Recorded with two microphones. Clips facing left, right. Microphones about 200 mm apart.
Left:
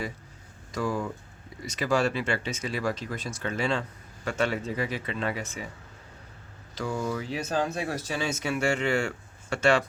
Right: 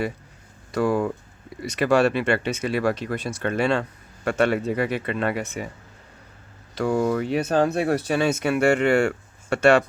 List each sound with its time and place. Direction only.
0.7 s speech: 65° right (ahead or behind)
6.7 s speech: 65° right (ahead or behind)